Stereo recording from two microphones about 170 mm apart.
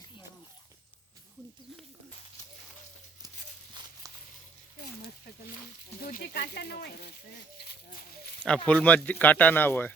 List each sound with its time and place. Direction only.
6.0 s speech: 60° left (ahead or behind)
8.4 s speech: 5° left (ahead or behind)